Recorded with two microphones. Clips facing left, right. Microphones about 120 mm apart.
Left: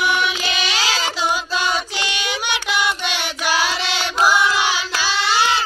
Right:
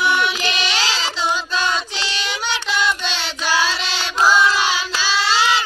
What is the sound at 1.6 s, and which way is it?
Child singing, 15° left (ahead or behind).